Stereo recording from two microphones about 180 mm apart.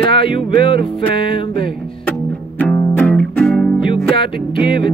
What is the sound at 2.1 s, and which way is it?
Music, 10° left (ahead or behind).